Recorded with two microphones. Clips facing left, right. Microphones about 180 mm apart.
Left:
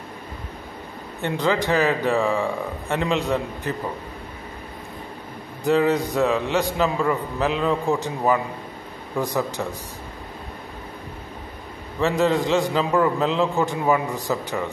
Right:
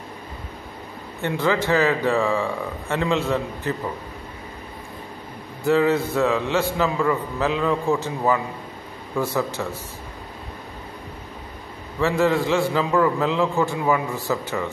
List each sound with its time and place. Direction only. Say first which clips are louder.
1.2 s a man's voice: even; 15° left (ahead or behind)
5.6 s a man's voice: even; 15° left (ahead or behind)
12.0 s a man's voice: even; 20° left (ahead or behind)